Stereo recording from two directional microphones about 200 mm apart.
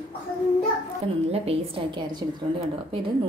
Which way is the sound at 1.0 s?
30° right (ahead or behind).